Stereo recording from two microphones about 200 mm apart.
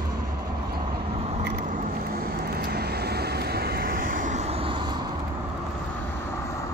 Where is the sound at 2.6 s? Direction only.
55° right (ahead or behind); by 4.7 s 30° right (ahead or behind).